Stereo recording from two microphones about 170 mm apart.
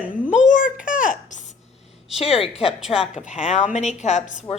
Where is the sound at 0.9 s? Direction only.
50° left (ahead or behind).